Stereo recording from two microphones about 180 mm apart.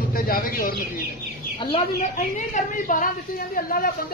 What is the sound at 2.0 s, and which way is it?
Speech, 45° left (ahead or behind).